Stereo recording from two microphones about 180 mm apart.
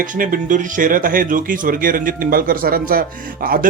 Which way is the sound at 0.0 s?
50° right (ahead or behind).